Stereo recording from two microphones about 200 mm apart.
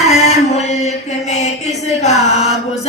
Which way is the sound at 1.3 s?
35° left (ahead or behind).